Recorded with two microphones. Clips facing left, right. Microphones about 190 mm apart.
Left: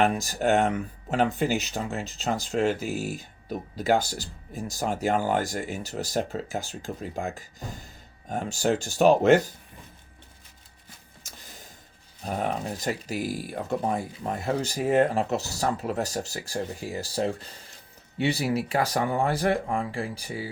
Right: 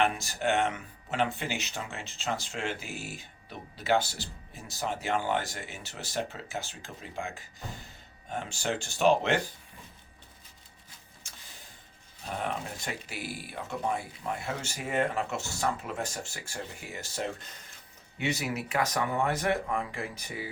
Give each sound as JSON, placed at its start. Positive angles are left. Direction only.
{"t": 0.0, "sound": "speech", "side_deg": 40}
{"t": 12.2, "sound": "speech", "side_deg": 40}